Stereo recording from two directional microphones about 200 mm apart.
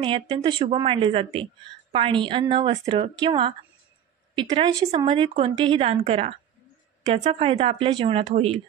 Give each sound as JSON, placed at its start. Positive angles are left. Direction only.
{"t": 0.0, "sound": "a woman's voice", "side_deg": -25}